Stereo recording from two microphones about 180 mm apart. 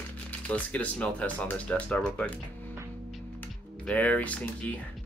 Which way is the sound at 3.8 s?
10° left (ahead or behind).